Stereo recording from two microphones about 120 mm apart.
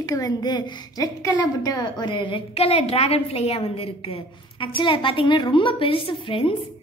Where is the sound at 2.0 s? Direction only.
40° left (ahead or behind).